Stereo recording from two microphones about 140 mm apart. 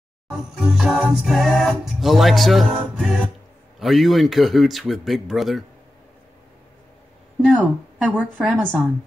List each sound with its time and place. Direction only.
0.3 s music: centre (ahead or behind)
7.4 s a woman's voice: 10° right (ahead or behind)